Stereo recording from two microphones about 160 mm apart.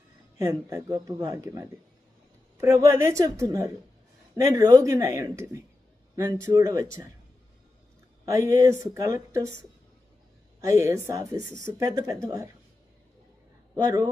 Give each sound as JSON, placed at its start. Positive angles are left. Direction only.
{"t": 0.3, "sound": "speech", "side_deg": -20}
{"t": 8.2, "sound": "speech", "side_deg": -20}
{"t": 10.6, "sound": "speech", "side_deg": -20}
{"t": 13.7, "sound": "speech", "side_deg": -25}